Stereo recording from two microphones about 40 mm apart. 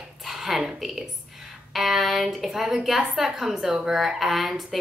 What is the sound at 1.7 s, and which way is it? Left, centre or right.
A woman's voice, centre.